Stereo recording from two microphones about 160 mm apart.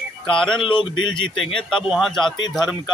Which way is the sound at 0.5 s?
30° left (ahead or behind).